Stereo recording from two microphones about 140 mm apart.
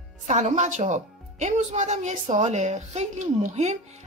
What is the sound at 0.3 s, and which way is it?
Speech, 55° right (ahead or behind).